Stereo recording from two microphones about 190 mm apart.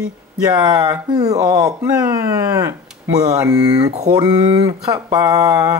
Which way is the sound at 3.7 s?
35° right (ahead or behind).